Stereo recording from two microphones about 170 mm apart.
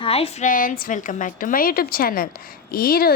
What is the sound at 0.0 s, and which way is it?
A woman's voice, 35° left (ahead or behind).